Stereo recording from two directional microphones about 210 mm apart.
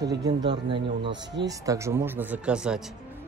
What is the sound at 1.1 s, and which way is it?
Speech, 55° right (ahead or behind).